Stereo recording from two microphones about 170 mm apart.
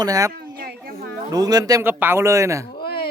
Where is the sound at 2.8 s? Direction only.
65° left (ahead or behind).